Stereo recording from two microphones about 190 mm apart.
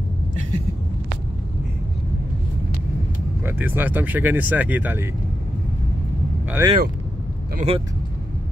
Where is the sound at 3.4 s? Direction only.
10° right (ahead or behind).